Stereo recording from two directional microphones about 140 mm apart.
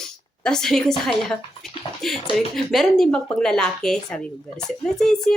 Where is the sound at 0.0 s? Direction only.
5° left (ahead or behind).